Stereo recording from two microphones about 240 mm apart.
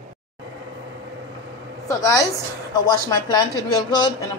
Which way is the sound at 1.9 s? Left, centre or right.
Centre.